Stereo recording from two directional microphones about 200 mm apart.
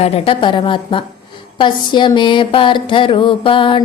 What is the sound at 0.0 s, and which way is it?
Speech, 25° left (ahead or behind).